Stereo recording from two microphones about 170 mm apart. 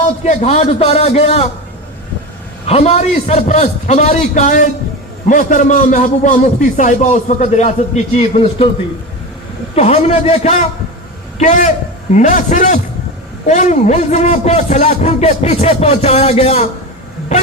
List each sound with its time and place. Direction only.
0.3 s a man's voice: 40° left (ahead or behind)
2.6 s a man's voice: 40° left (ahead or behind)
9.7 s a man's voice: 35° left (ahead or behind)